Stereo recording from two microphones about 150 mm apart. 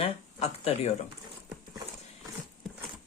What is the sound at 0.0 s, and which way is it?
Speech, 40° left (ahead or behind).